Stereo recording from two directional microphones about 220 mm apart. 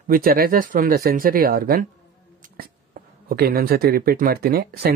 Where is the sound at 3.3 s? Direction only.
45° right (ahead or behind).